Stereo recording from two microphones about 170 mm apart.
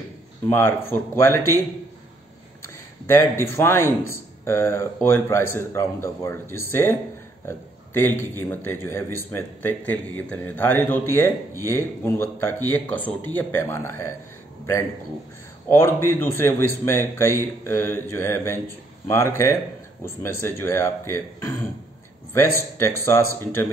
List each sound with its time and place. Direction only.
0.5 s a man's voice: 15° left (ahead or behind)
2.6 s a man's voice: 15° left (ahead or behind)
7.4 s a sound: 15° left (ahead or behind)
8.2 s a man's voice: 15° left (ahead or behind)
15.7 s a man's voice: 15° left (ahead or behind)